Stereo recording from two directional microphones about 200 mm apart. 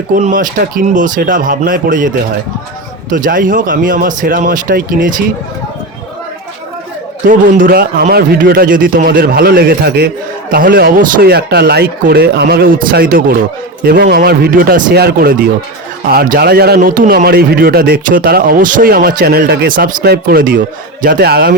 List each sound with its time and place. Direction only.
0.1 s a man's voice: 40° right (ahead or behind)
3.1 s a man's voice: 45° right (ahead or behind)
7.3 s a man's voice: 45° right (ahead or behind)